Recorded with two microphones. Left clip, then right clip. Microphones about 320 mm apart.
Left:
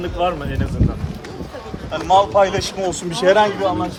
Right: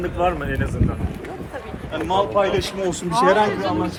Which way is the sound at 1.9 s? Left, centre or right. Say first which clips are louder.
Left 6 dB; left.